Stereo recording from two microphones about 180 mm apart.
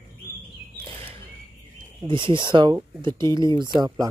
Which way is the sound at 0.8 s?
30° right (ahead or behind).